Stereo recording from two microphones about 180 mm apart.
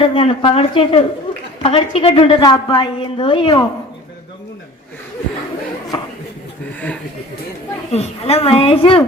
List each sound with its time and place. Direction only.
0.0 s a woman's voice: 30° left (ahead or behind)
6.7 s a sound: 10° left (ahead or behind)
7.9 s a woman's voice: 35° left (ahead or behind)